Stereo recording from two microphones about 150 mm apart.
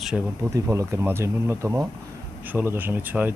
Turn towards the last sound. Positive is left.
turn(degrees=-10)  # may be behind; listen again after turning